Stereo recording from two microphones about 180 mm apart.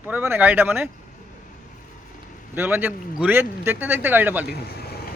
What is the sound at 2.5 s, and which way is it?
Speech, 10° right (ahead or behind).